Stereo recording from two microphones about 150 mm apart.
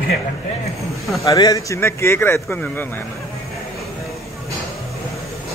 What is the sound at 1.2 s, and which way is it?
Speech, 25° left (ahead or behind).